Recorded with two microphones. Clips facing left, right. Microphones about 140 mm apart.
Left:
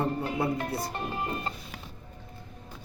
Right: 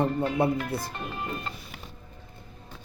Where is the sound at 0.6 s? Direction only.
30° left (ahead or behind).